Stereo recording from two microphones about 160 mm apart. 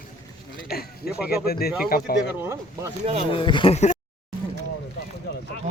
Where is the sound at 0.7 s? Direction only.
75° left (ahead or behind).